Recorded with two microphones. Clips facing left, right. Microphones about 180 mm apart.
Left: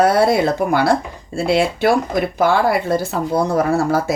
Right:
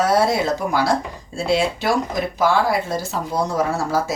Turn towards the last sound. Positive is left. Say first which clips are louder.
# left 4 dB
turn(degrees=60)  # may be behind; listen again after turning